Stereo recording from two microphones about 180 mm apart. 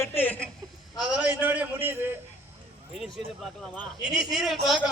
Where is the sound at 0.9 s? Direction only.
5° right (ahead or behind).